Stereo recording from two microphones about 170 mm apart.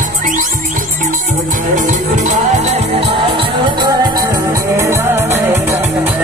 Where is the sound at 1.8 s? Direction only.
45° right (ahead or behind).